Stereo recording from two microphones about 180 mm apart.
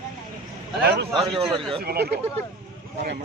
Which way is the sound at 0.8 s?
65° right (ahead or behind).